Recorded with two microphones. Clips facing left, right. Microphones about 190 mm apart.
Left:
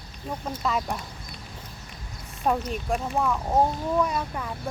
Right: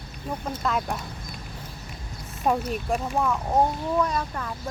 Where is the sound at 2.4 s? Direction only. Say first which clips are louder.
Right 1 dB; 5° right (ahead or behind).